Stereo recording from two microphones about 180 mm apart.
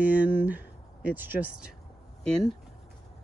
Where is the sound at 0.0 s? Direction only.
10° right (ahead or behind).